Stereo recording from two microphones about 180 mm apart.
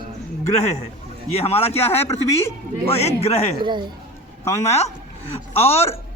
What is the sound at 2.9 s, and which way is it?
Speech, 35° left (ahead or behind).